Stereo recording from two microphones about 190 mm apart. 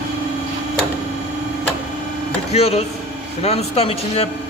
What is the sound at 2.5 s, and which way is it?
Speech, 35° left (ahead or behind).